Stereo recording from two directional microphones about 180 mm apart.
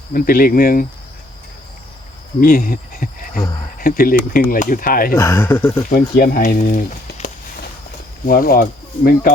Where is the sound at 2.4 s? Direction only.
50° left (ahead or behind).